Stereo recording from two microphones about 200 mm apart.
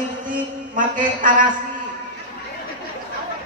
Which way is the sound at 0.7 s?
40° right (ahead or behind).